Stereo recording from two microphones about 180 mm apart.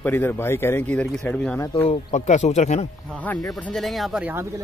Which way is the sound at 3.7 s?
Centre (ahead or behind).